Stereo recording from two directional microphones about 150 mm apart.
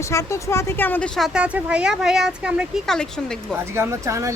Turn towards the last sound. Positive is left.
turn(degrees=-20)  # may be behind; listen again after turning